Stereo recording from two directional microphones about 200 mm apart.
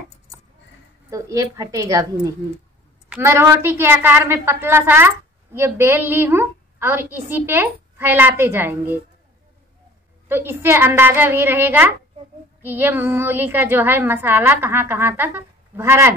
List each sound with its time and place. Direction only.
1.1 s a woman's voice: 15° right (ahead or behind)
10.2 s a woman's voice: 10° right (ahead or behind)